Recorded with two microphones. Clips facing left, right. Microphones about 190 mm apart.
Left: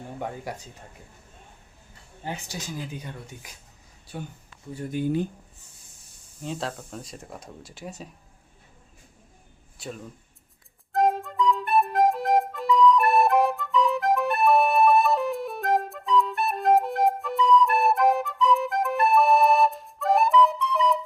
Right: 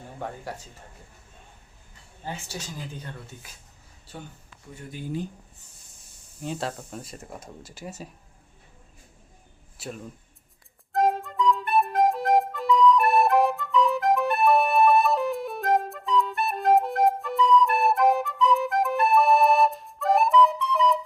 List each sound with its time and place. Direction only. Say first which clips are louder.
2.2 s speech: left 1 dB; 15° left (ahead or behind)
4.9 s speech: left 10 dB; 55° left (ahead or behind)
6.4 s speech: right 1 dB; centre (ahead or behind)
9.8 s speech: even; centre (ahead or behind)
10.9 s music: left 1 dB; centre (ahead or behind)